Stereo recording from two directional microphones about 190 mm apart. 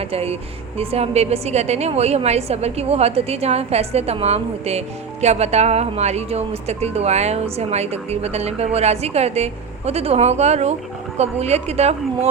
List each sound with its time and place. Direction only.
0.0 s a woman's voice: 30° right (ahead or behind)